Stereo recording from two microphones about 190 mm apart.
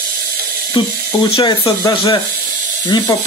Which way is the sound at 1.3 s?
25° left (ahead or behind).